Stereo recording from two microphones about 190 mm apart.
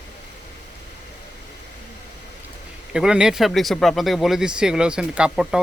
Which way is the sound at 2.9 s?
5° right (ahead or behind).